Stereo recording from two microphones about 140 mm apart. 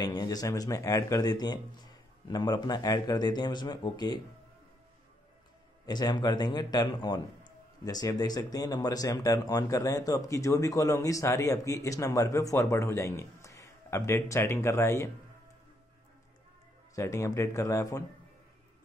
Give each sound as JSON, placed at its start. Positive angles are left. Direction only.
{"t": 0.0, "sound": "speech", "side_deg": 30}
{"t": 5.9, "sound": "speech", "side_deg": 30}
{"t": 16.9, "sound": "speech", "side_deg": 20}